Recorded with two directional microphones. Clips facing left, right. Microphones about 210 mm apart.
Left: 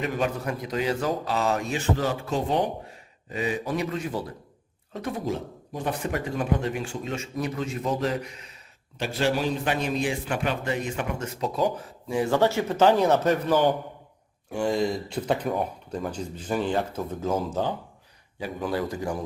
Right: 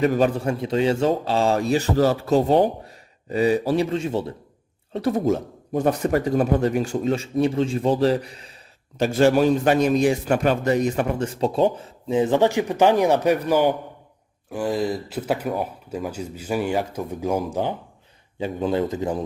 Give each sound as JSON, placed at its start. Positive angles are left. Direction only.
{"t": 0.0, "sound": "a man's voice", "side_deg": -35}
{"t": 4.9, "sound": "a man's voice", "side_deg": -40}
{"t": 9.0, "sound": "a man's voice", "side_deg": -45}